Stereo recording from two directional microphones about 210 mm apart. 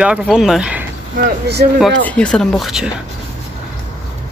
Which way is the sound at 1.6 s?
45° right (ahead or behind).